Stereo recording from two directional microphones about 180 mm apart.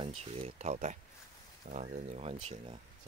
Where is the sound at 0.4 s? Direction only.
35° right (ahead or behind).